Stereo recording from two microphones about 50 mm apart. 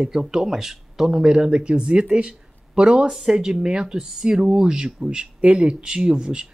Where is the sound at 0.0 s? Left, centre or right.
Centre.